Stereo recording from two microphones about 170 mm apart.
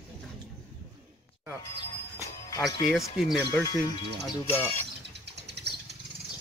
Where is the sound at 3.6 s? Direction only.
25° left (ahead or behind).